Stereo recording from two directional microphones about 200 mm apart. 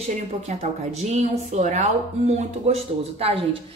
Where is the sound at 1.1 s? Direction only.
35° right (ahead or behind).